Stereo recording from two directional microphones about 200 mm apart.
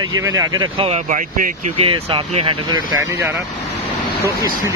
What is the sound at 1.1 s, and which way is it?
Speech, 35° right (ahead or behind).